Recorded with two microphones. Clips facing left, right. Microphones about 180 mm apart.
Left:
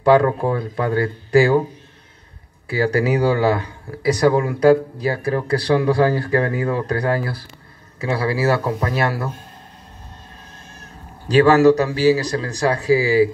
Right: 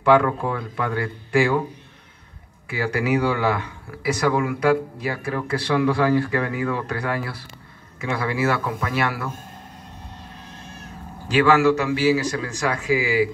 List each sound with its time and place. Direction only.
0.0 s speech: 35° left (ahead or behind)
2.7 s speech: 35° left (ahead or behind)
11.2 s speech: 40° left (ahead or behind)